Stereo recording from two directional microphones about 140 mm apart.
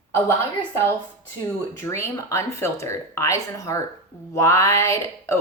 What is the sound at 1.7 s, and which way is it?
A woman's voice, 20° left (ahead or behind).